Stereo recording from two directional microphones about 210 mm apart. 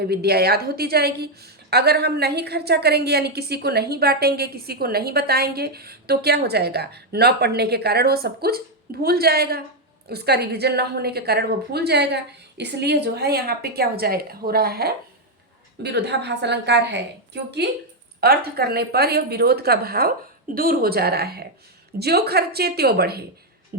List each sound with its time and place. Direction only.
0.0 s a woman's voice: 50° right (ahead or behind)